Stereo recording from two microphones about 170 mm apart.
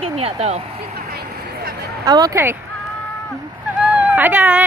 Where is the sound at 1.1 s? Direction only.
65° right (ahead or behind).